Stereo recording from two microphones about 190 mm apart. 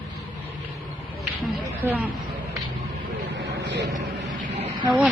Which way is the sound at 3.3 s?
65° right (ahead or behind).